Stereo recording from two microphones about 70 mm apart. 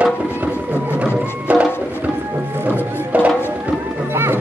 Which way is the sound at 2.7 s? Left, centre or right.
Right.